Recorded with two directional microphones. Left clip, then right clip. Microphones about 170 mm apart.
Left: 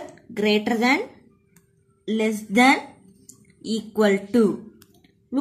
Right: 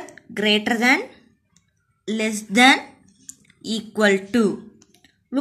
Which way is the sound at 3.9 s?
15° right (ahead or behind).